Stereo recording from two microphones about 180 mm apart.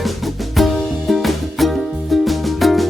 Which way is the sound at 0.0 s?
Centre (ahead or behind).